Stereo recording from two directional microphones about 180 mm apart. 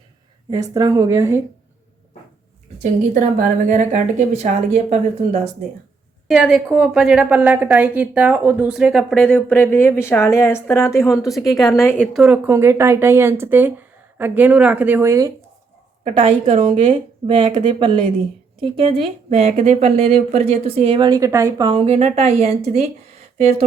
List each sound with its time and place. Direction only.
0.5 s speech: 20° right (ahead or behind)
3.2 s a woman's voice: 45° right (ahead or behind)
6.2 s a woman's voice: centre (ahead or behind)
12.1 s speech: 5° right (ahead or behind)
16.0 s a woman's voice: 35° right (ahead or behind)